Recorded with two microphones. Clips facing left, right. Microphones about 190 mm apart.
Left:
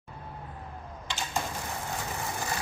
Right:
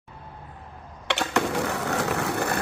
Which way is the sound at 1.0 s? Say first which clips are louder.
Right 9 dB; 70° right (ahead or behind).